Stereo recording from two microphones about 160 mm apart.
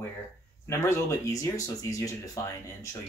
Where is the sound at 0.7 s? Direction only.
20° left (ahead or behind).